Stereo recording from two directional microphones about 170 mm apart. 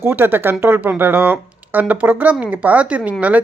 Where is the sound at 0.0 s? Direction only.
10° right (ahead or behind).